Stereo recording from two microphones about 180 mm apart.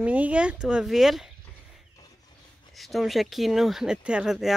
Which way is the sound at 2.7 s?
Centre (ahead or behind).